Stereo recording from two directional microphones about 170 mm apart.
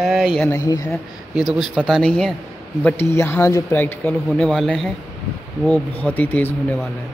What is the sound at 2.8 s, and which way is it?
Speech, 15° left (ahead or behind).